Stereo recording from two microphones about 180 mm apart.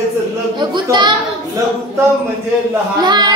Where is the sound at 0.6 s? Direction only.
25° right (ahead or behind).